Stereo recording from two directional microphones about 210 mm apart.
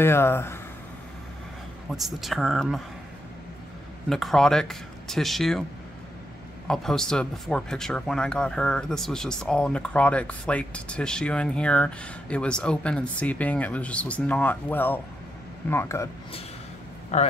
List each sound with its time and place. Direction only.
0.0 s speech: 10° left (ahead or behind)
1.9 s speech: centre (ahead or behind)
4.1 s speech: centre (ahead or behind)
6.7 s speech: 5° left (ahead or behind)
17.1 s speech: 35° left (ahead or behind)